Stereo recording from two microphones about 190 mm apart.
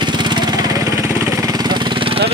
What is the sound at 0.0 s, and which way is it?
Vehicle, 25° right (ahead or behind).